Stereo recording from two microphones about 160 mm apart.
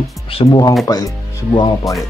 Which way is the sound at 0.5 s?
25° left (ahead or behind).